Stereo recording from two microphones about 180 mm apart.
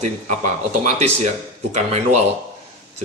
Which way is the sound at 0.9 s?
40° right (ahead or behind).